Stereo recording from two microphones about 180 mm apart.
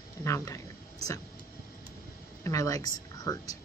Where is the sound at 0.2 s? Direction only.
15° left (ahead or behind).